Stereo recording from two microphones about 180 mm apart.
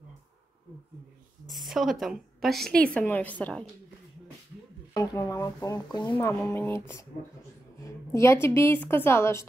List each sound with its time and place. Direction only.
1.5 s a woman's voice: centre (ahead or behind)
4.9 s a woman's voice: 20° left (ahead or behind)